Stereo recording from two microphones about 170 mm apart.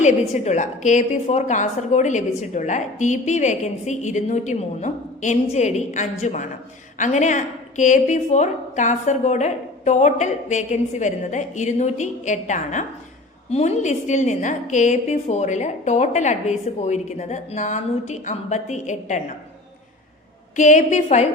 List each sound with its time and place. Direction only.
0.0 s a woman's voice: 40° left (ahead or behind)
20.6 s a woman's voice: 45° left (ahead or behind)